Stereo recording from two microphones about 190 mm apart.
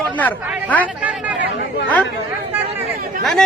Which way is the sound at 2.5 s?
10° right (ahead or behind).